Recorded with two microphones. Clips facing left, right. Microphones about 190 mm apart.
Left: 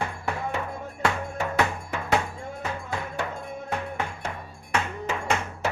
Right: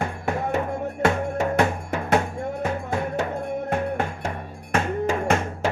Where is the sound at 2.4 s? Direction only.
60° right (ahead or behind).